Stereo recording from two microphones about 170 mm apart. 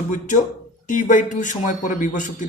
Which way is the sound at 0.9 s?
50° left (ahead or behind).